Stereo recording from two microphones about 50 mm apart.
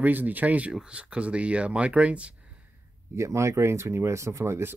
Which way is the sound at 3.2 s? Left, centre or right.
Right.